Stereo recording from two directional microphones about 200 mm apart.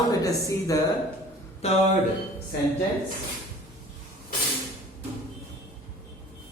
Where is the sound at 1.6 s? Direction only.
35° left (ahead or behind).